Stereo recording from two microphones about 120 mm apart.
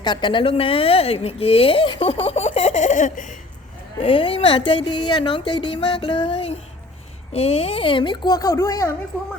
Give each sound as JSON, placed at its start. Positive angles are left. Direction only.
{"t": 0.0, "sound": "speech", "side_deg": 40}
{"t": 4.0, "sound": "speech", "side_deg": 50}